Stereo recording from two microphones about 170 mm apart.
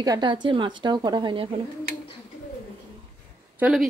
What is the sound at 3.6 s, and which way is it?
Speech, 5° right (ahead or behind).